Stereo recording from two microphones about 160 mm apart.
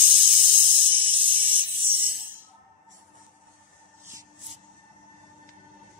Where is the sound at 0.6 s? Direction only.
30° right (ahead or behind).